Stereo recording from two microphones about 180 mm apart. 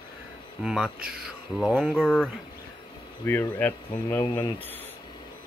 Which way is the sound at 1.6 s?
Centre (ahead or behind).